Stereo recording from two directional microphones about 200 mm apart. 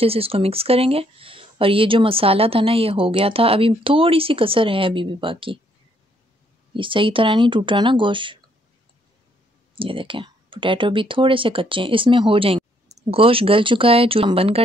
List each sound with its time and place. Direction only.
0.0 s speech: 30° right (ahead or behind)
6.7 s speech: 25° right (ahead or behind)
9.8 s speech: 25° right (ahead or behind)